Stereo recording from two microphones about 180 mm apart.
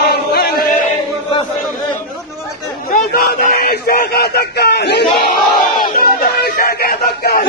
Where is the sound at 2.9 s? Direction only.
55° left (ahead or behind).